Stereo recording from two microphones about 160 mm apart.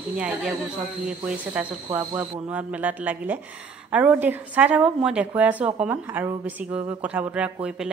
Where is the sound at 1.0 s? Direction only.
5° right (ahead or behind).